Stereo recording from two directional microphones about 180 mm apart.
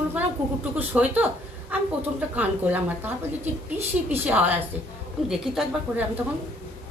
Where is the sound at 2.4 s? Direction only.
10° right (ahead or behind).